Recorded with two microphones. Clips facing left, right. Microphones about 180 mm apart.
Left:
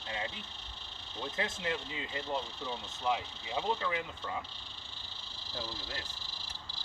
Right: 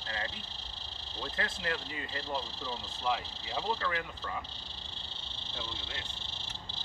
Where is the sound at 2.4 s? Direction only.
30° right (ahead or behind).